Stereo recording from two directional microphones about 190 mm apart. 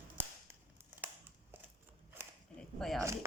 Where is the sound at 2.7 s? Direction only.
Centre (ahead or behind).